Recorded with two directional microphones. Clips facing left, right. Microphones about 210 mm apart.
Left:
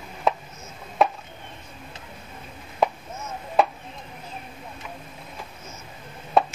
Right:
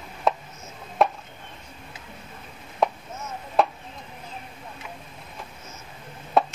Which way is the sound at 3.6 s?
Centre (ahead or behind).